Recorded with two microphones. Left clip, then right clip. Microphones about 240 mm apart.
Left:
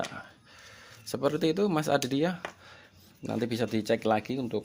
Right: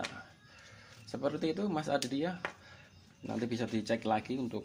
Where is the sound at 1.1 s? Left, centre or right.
Left.